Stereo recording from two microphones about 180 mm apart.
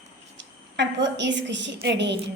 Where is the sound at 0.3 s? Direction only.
85° right.